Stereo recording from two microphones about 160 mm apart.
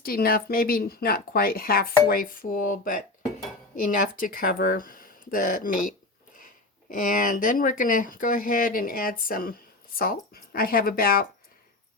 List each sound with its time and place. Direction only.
0.0 s a woman's voice: 65° left (ahead or behind)
6.9 s speech: 60° left (ahead or behind)